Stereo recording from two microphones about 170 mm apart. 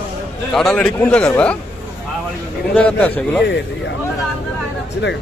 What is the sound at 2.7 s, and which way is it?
Speech, 5° left (ahead or behind).